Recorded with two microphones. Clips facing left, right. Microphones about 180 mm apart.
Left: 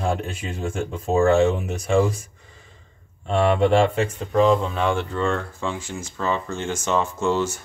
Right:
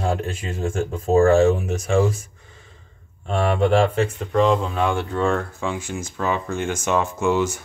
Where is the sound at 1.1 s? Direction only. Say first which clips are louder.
Right 3 dB; 40° right (ahead or behind).